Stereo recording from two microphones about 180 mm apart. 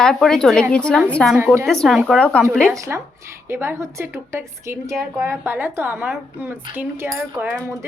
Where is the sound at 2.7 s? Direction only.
15° right (ahead or behind).